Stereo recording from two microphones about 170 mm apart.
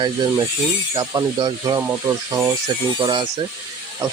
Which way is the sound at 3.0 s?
25° right (ahead or behind).